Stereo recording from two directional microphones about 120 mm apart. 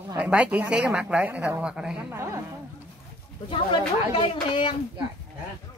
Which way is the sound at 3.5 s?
45° left (ahead or behind).